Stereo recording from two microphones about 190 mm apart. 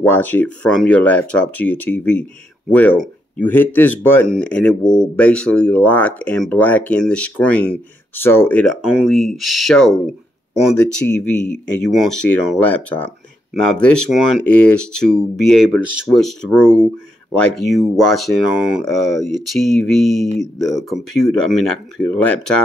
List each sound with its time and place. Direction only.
0.0 s speech: 10° left (ahead or behind)
11.1 s speech: 5° left (ahead or behind)